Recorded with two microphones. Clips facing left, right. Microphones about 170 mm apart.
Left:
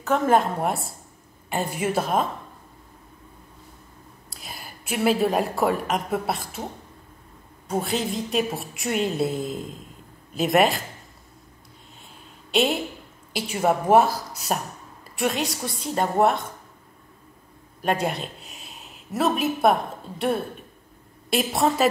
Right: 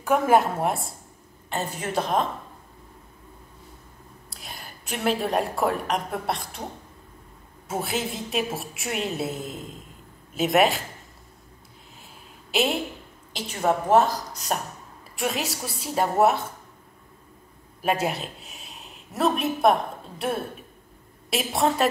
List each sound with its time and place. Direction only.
0.0 s a woman's voice: 10° right (ahead or behind)
1.5 s a woman's voice: 10° left (ahead or behind)
4.3 s a woman's voice: centre (ahead or behind)
7.6 s a woman's voice: 5° right (ahead or behind)
12.4 s a sound: centre (ahead or behind)
13.3 s a woman's voice: 10° left (ahead or behind)
17.8 s a woman's voice: 5° right (ahead or behind)